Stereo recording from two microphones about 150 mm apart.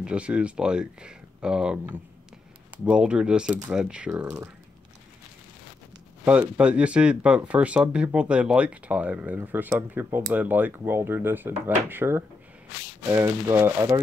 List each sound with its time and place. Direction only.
0.0 s speech: 10° right (ahead or behind)
4.1 s speech: 15° right (ahead or behind)
6.2 s speech: 10° right (ahead or behind)